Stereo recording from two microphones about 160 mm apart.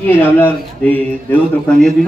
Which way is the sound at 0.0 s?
10° left (ahead or behind).